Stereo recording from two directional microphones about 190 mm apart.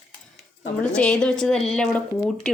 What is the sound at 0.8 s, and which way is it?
Speech, 5° left (ahead or behind).